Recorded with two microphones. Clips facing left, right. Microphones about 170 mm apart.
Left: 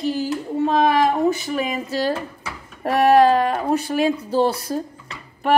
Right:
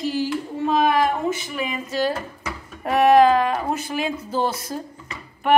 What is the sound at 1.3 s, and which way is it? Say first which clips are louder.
Speech: left 4 dB; 40° left (ahead or behind).